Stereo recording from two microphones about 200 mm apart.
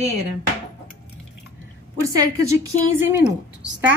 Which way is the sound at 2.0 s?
15° right (ahead or behind).